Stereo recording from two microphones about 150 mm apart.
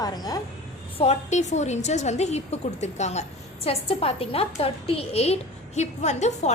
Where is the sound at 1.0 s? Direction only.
50° left (ahead or behind).